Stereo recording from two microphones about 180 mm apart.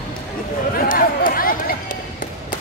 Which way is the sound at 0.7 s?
50° left (ahead or behind).